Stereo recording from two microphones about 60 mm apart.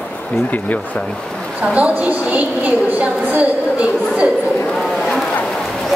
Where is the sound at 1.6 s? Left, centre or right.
Right.